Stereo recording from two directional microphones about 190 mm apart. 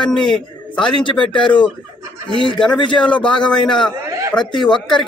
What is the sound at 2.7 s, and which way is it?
Speech, 25° left (ahead or behind).